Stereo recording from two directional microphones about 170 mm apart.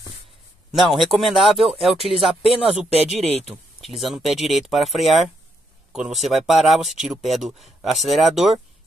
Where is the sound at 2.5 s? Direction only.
35° right (ahead or behind).